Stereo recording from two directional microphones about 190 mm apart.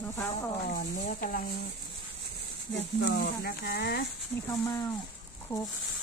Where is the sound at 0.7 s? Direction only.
45° left (ahead or behind).